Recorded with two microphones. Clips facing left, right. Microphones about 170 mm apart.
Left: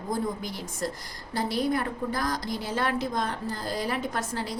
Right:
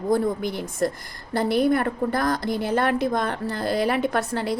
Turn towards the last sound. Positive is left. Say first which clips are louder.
# right 7 dB
turn(degrees=-60)  # may be behind; listen again after turning